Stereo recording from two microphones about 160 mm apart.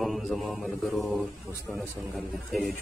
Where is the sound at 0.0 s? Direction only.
Centre (ahead or behind).